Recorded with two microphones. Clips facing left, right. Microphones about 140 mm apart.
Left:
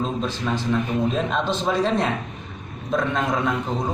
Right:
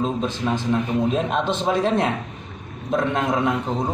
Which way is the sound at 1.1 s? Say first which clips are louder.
Right 1 dB; 10° right (ahead or behind).